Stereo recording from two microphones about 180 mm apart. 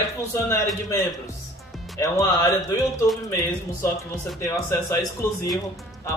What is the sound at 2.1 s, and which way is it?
Speech, 15° left (ahead or behind).